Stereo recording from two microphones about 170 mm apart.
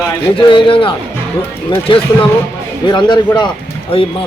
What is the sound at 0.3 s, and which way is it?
Speech, 30° left (ahead or behind).